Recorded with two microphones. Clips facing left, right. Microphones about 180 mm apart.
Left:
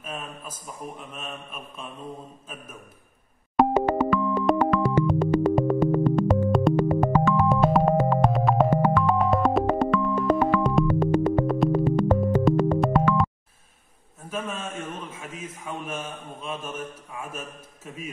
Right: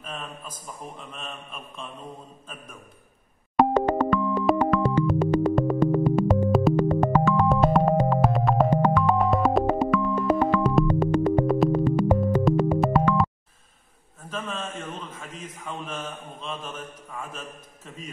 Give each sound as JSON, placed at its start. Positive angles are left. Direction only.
{"t": 0.0, "sound": "a man's voice", "side_deg": 5}
{"t": 0.9, "sound": "mantra", "side_deg": 5}
{"t": 2.4, "sound": "a man's voice", "side_deg": 5}
{"t": 3.5, "sound": "dial tone", "side_deg": 0}
{"t": 8.9, "sound": "music", "side_deg": 0}
{"t": 14.3, "sound": "a man's voice", "side_deg": 10}